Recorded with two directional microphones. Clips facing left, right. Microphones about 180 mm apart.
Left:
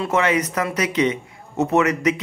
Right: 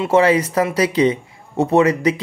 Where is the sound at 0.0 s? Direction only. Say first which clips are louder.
Right 6 dB; 30° right (ahead or behind).